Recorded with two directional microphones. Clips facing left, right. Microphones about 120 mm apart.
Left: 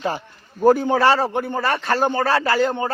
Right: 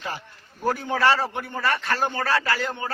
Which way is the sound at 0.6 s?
35° left (ahead or behind).